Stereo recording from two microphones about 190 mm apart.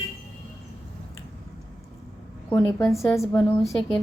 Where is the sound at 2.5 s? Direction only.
15° left (ahead or behind).